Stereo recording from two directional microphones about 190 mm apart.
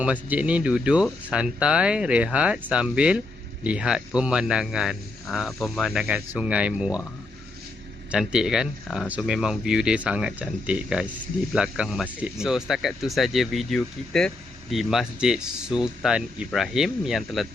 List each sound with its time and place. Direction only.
0.0 s speech: 5° right (ahead or behind)
8.1 s speech: 5° right (ahead or behind)